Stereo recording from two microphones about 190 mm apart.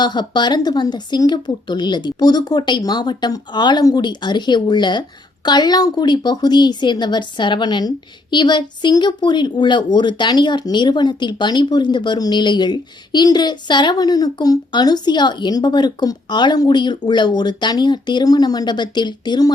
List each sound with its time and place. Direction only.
0.0 s speech: 20° left (ahead or behind)